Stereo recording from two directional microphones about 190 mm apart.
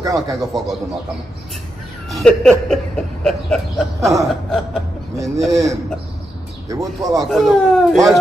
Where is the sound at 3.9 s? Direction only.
15° right (ahead or behind).